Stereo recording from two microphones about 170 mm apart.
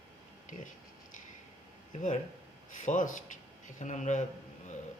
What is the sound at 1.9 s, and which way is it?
Speech, 45° left (ahead or behind).